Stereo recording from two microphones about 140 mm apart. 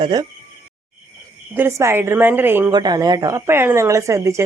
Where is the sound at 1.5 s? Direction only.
15° right (ahead or behind).